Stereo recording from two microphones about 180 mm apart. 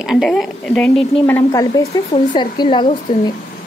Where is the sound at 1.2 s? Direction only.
15° left (ahead or behind).